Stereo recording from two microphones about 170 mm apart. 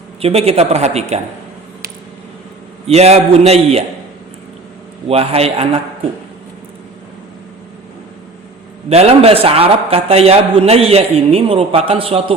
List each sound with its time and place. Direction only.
0.2 s a man's voice: 35° right (ahead or behind)
2.8 s a man's voice: 40° right (ahead or behind)
5.0 s a man's voice: 35° right (ahead or behind)
8.9 s a man's voice: 35° right (ahead or behind)